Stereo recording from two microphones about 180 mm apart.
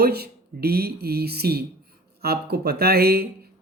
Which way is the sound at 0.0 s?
60° right (ahead or behind).